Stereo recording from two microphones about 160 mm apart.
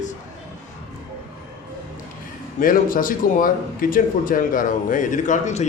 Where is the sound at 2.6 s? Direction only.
60° left (ahead or behind).